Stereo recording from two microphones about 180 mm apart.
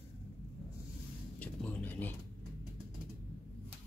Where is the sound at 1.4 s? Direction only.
10° left (ahead or behind).